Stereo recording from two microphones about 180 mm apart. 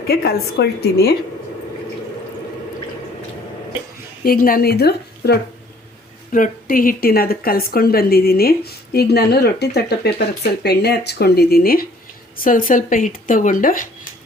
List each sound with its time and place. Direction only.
0.1 s a woman's voice: 60° left (ahead or behind)
4.2 s a woman's voice: 55° left (ahead or behind)
6.3 s a woman's voice: 50° left (ahead or behind)